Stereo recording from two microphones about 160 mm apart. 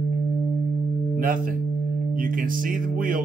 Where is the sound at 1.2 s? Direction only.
60° right (ahead or behind).